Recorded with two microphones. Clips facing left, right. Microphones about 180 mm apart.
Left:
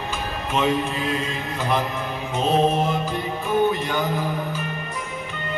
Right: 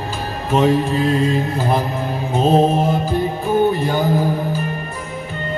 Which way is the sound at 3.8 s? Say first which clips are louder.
Right 7 dB; 35° right (ahead or behind).